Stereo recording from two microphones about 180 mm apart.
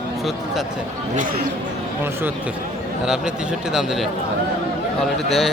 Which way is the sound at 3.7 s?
Centre (ahead or behind).